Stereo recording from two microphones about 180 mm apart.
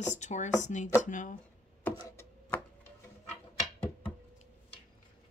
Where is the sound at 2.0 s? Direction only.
15° left (ahead or behind).